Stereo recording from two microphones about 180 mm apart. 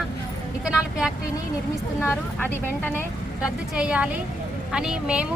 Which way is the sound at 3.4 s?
5° right (ahead or behind).